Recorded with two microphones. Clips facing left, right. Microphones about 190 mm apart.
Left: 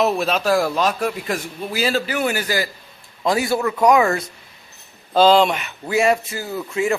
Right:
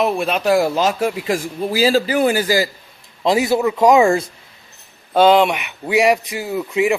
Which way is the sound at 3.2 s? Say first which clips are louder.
Right 4 dB; 20° right (ahead or behind).